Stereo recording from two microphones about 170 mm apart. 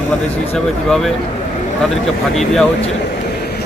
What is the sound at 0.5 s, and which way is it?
Speech, 5° left (ahead or behind).